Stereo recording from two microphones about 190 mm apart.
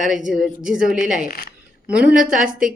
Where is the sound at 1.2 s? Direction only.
50° left (ahead or behind).